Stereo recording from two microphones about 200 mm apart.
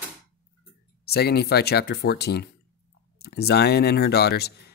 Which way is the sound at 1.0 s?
55° left (ahead or behind).